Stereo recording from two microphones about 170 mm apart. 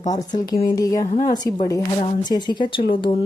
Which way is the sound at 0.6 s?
20° left (ahead or behind).